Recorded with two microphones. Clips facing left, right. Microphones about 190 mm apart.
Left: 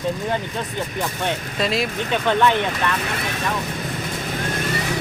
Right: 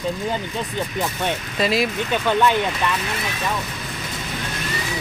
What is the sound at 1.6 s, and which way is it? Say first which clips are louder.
Speech: right 2 dB; 5° right (ahead or behind).